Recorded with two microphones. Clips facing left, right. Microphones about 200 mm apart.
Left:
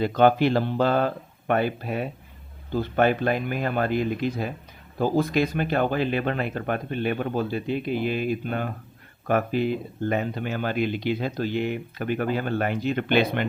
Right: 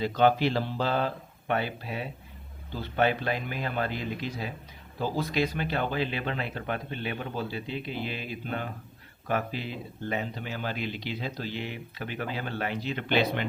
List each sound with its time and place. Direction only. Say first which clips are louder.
0.0 s speech: left 4 dB; 55° left (ahead or behind)